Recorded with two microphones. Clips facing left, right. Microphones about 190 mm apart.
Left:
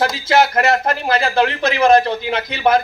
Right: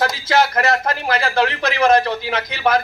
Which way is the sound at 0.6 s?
20° left (ahead or behind).